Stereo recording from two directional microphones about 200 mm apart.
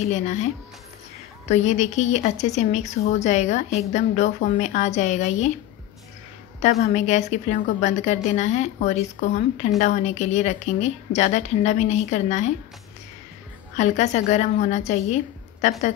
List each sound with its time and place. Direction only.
0.0 s a woman's voice: 35° left (ahead or behind)
1.5 s a woman's voice: 35° left (ahead or behind)
6.6 s a woman's voice: 35° left (ahead or behind)
13.7 s a woman's voice: 35° left (ahead or behind)